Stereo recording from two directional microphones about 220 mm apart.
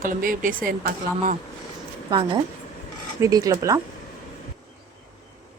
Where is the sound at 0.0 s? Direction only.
40° right (ahead or behind).